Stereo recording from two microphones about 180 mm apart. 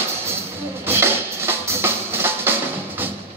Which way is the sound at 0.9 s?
15° right (ahead or behind).